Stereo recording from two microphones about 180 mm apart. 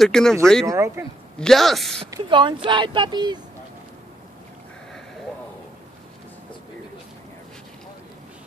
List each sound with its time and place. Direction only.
0.0 s speech: 5° left (ahead or behind)
0.7 s speech: 15° right (ahead or behind)
1.4 s speech: centre (ahead or behind)
2.0 s speech: 25° right (ahead or behind)